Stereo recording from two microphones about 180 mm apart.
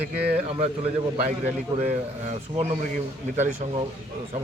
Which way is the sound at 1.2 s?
40° right (ahead or behind).